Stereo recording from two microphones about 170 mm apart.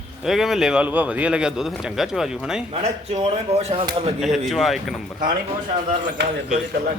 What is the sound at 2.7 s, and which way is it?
Speech, 40° right (ahead or behind).